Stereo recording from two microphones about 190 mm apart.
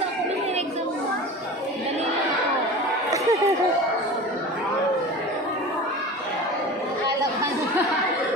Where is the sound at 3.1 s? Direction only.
15° right (ahead or behind).